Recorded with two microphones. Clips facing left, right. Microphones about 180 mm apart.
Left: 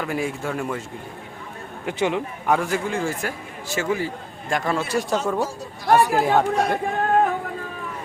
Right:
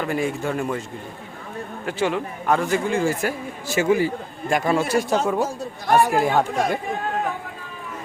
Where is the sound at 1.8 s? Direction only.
20° left (ahead or behind).